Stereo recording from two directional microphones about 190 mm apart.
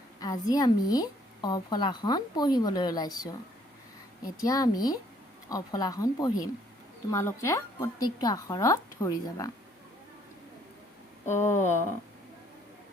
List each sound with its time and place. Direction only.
0.2 s a woman's voice: 20° left (ahead or behind)
11.3 s a woman's voice: 15° left (ahead or behind)